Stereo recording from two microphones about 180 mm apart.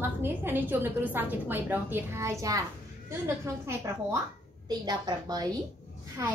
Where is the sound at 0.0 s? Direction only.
10° right (ahead or behind).